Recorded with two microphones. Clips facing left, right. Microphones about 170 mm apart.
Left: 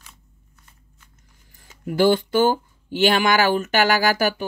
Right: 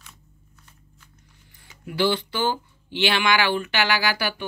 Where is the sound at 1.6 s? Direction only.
45° left (ahead or behind).